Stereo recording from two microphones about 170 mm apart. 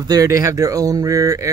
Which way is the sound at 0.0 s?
20° right (ahead or behind).